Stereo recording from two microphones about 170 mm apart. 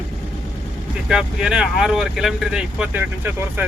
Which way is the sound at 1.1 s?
5° right (ahead or behind).